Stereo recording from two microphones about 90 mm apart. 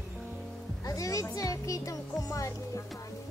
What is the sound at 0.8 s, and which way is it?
Music, 40° left (ahead or behind).